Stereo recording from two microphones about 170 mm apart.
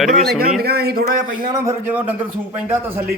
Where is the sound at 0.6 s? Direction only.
65° right (ahead or behind).